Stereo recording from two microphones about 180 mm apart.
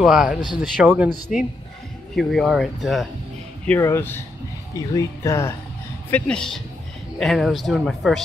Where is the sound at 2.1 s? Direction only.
Centre (ahead or behind).